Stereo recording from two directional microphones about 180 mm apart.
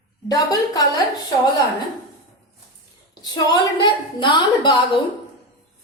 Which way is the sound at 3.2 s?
20° left (ahead or behind).